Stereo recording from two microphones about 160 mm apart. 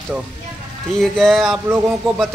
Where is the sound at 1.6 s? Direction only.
10° right (ahead or behind).